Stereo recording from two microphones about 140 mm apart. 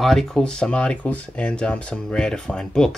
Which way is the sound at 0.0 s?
Centre (ahead or behind).